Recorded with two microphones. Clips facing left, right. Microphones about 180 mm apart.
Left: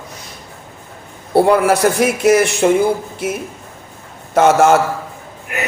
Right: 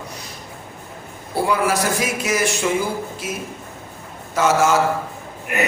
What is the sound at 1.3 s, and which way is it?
Speech, 60° left (ahead or behind).